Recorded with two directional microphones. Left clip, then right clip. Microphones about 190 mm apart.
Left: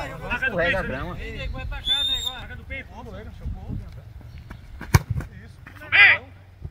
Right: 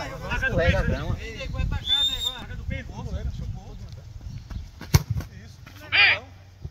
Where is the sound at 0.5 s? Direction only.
25° right (ahead or behind).